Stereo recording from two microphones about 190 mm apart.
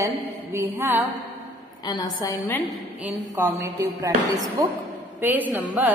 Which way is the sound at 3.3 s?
15° right (ahead or behind).